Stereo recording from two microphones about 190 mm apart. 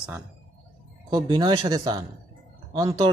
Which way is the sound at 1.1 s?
25° right (ahead or behind).